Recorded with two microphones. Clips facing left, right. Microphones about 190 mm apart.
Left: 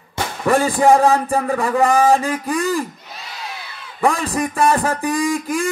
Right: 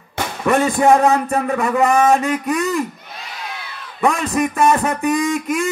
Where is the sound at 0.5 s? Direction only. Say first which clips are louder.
Even; 30° left (ahead or behind).